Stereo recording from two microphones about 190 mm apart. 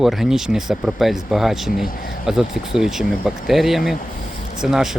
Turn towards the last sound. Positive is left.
turn(degrees=0)  # may be behind; listen again after turning